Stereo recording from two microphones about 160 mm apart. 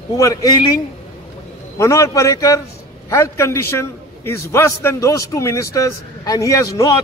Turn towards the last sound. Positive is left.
turn(degrees=20)  # may be behind; listen again after turning